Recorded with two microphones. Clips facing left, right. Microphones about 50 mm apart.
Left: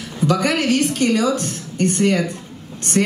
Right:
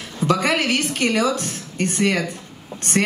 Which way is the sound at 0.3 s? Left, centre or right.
Right.